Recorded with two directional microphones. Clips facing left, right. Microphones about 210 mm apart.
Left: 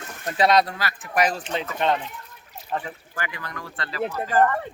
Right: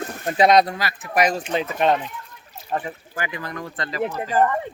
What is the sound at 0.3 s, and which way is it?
Speech, 15° right (ahead or behind).